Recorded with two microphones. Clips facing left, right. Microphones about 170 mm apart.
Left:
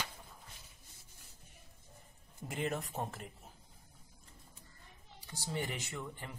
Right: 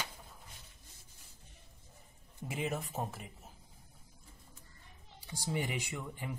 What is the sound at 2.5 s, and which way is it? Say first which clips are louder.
Speech: even; 5° right (ahead or behind).